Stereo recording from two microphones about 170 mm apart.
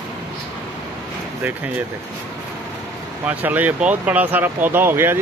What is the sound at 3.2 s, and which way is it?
Speech, 10° right (ahead or behind).